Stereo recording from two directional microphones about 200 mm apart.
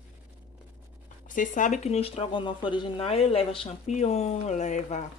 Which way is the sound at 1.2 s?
40° left (ahead or behind).